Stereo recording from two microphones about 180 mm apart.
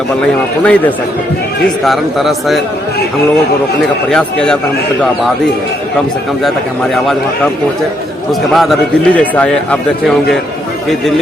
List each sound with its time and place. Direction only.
0.6 s a man's voice: 5° left (ahead or behind)
4.1 s a man's voice: 5° left (ahead or behind)
8.3 s a man's voice: centre (ahead or behind)